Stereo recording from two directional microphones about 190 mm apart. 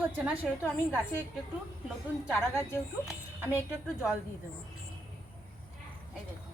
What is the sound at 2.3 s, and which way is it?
Speech, 15° left (ahead or behind).